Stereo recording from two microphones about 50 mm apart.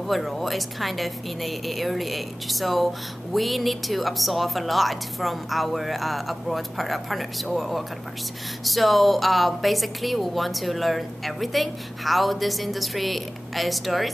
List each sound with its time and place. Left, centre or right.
0.0 s a woman's voice: centre